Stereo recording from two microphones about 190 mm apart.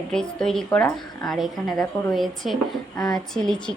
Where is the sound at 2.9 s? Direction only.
20° left (ahead or behind).